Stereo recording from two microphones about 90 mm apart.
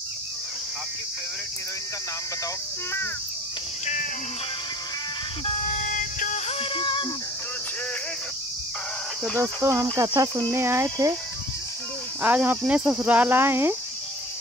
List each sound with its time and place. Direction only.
6.6 s music: 70° left (ahead or behind)
9.4 s cricket: 30° right (ahead or behind)
10.5 s speech: 30° right (ahead or behind)
12.2 s speech: 20° right (ahead or behind)